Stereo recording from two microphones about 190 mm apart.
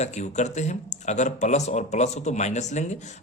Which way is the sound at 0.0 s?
35° left (ahead or behind).